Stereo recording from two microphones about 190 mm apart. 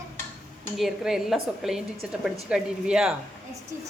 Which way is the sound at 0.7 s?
Centre (ahead or behind).